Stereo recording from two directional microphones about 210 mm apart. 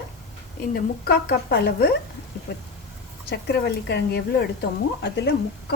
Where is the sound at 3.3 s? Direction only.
50° left (ahead or behind).